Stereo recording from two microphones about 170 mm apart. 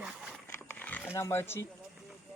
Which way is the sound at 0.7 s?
10° left (ahead or behind).